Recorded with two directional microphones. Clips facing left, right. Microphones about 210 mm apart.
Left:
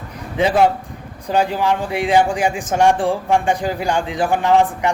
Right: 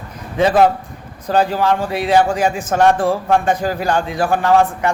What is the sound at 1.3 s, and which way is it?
A man's voice, 15° left (ahead or behind).